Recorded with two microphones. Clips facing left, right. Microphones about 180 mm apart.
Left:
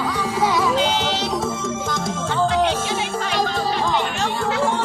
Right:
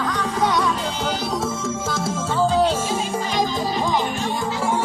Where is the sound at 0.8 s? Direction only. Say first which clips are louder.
Left 4 dB; 80° left.